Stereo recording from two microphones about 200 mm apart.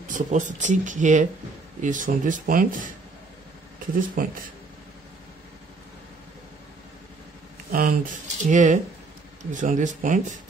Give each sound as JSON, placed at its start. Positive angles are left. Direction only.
{"t": 0.1, "sound": "speech", "side_deg": -40}
{"t": 3.9, "sound": "speech", "side_deg": -45}
{"t": 7.7, "sound": "speech", "side_deg": -45}